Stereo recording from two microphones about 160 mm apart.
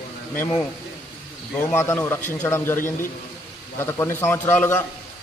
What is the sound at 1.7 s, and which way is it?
A man's voice, 15° left (ahead or behind).